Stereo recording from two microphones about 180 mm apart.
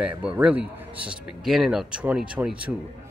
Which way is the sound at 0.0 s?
5° right (ahead or behind).